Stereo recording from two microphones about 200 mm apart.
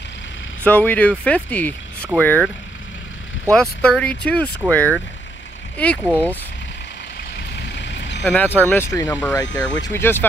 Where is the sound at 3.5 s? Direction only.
5° left (ahead or behind).